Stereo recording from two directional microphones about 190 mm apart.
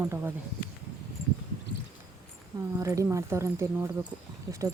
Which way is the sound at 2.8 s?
15° right (ahead or behind).